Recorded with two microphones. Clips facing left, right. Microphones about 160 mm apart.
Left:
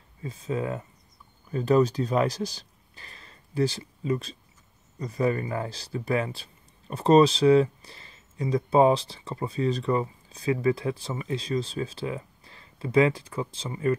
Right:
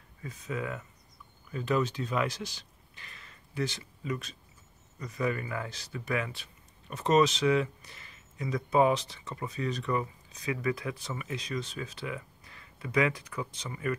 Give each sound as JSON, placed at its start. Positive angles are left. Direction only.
{"t": 0.2, "sound": "speech", "side_deg": 30}